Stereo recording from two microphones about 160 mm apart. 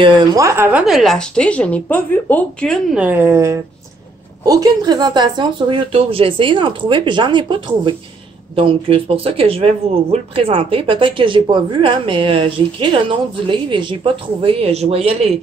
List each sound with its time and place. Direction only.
0.0 s speech: 20° right (ahead or behind); by 3.0 s 5° left (ahead or behind)
3.0 s a woman's voice: 10° right (ahead or behind); by 15.3 s 40° right (ahead or behind)